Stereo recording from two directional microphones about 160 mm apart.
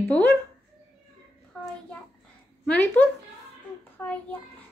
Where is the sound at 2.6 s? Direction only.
10° left (ahead or behind).